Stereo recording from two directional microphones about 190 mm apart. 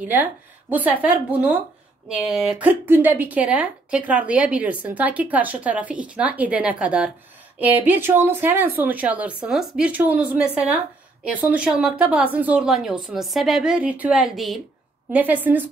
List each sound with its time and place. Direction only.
0.0 s speech: 10° right (ahead or behind)